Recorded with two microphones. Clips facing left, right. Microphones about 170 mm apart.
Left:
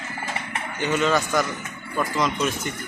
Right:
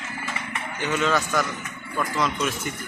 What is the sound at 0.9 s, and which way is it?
Speech, 10° left (ahead or behind).